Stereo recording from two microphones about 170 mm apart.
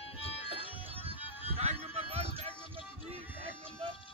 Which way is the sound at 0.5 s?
35° right (ahead or behind).